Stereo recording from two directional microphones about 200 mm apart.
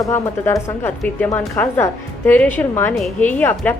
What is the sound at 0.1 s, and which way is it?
A woman's voice, 15° left (ahead or behind).